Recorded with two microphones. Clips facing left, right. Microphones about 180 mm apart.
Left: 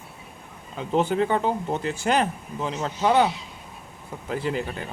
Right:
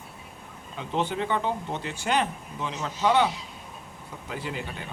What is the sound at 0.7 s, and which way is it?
A man's voice, 40° left (ahead or behind).